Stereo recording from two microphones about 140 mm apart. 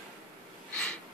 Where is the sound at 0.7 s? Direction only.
5° left (ahead or behind).